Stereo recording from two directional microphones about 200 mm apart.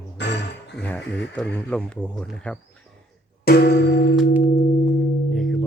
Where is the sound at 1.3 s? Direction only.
5° left (ahead or behind).